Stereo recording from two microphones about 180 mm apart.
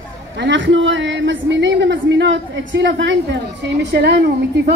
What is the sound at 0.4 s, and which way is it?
A woman's voice, 85° right.